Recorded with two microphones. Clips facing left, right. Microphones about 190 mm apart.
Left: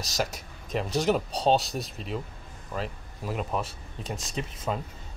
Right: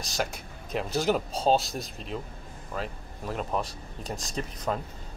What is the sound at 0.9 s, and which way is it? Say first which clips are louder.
Speech: left 1 dB; centre (ahead or behind).